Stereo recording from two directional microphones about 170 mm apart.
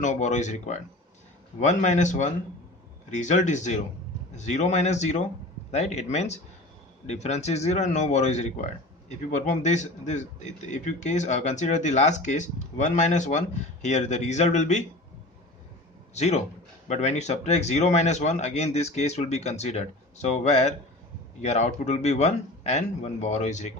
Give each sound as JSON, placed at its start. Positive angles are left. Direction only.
{"t": 0.0, "sound": "speech", "side_deg": 45}
{"t": 16.1, "sound": "speech", "side_deg": 40}